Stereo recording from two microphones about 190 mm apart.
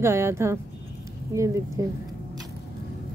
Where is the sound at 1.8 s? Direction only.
15° right (ahead or behind).